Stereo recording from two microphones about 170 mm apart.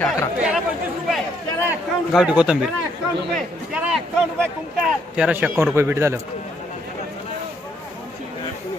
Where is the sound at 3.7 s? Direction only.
5° right (ahead or behind).